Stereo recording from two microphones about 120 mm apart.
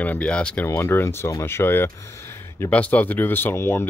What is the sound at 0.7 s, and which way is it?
Speech, 20° left (ahead or behind).